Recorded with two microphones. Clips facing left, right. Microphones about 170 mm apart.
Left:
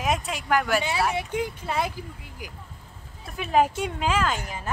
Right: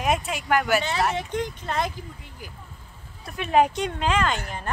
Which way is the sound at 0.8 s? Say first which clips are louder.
Right 1 dB; 10° left (ahead or behind).